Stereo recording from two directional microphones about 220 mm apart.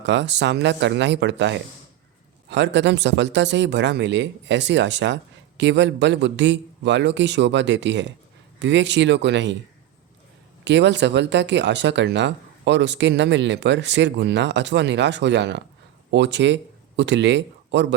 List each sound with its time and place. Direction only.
0.0 s speech: 55° right (ahead or behind)
10.6 s speech: 55° right (ahead or behind)